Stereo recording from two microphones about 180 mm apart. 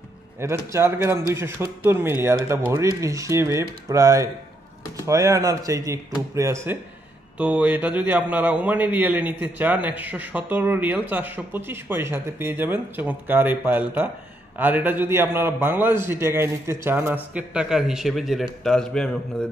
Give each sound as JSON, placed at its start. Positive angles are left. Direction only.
{"t": 0.4, "sound": "a man's voice", "side_deg": -15}